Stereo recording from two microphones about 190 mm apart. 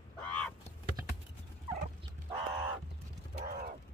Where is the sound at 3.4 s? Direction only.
50° right (ahead or behind).